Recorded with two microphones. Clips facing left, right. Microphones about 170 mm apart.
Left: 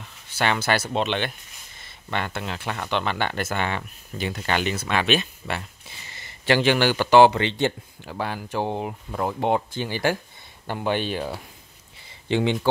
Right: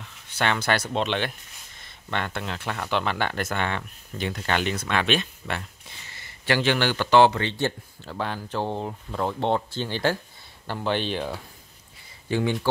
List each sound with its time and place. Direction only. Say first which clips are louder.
0.3 s speech: left 1 dB; 5° left (ahead or behind)
6.4 s a man's voice: left 3 dB; 25° left (ahead or behind)
6.7 s speech: left 2 dB; 10° left (ahead or behind)
12.3 s speech: left 2 dB; 25° left (ahead or behind)